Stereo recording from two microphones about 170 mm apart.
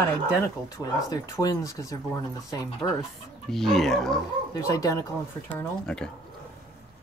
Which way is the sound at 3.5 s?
Centre (ahead or behind).